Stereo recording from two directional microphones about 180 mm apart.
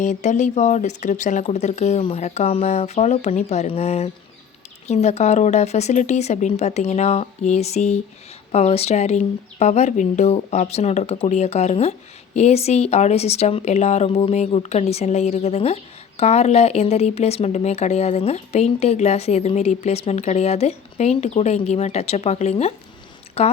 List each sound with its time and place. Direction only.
0.0 s a woman's voice: 40° left (ahead or behind)